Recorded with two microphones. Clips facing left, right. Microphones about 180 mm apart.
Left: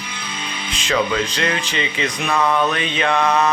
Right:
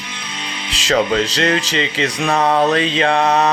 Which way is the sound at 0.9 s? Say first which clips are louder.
Right 4 dB; 35° right (ahead or behind).